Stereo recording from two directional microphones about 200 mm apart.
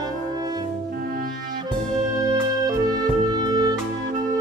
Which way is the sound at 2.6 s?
20° right (ahead or behind).